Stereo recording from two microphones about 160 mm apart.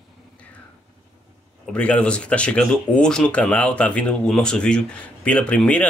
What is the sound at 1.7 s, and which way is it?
Speech, 10° left (ahead or behind).